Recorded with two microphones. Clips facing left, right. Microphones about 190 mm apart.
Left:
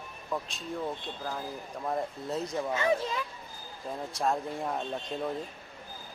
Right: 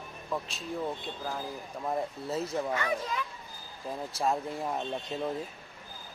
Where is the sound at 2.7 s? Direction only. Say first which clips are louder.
Left 3 dB; 25° left (ahead or behind).